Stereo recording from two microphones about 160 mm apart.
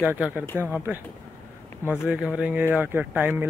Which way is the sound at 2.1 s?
5° right (ahead or behind).